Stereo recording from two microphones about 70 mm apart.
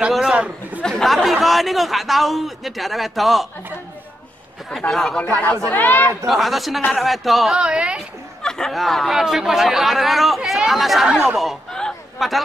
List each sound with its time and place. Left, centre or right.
0.1 s a man's voice: centre
0.8 s speech: centre
4.7 s speech: centre
5.7 s speech: left
6.2 s speech: centre
7.5 s a woman's voice: centre
8.4 s speech: centre
11.7 s a sound: centre